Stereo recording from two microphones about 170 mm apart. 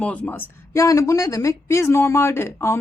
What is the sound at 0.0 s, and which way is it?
A woman's voice, 10° left (ahead or behind).